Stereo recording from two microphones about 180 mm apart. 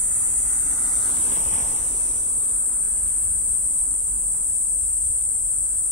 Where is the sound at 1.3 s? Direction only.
40° left (ahead or behind).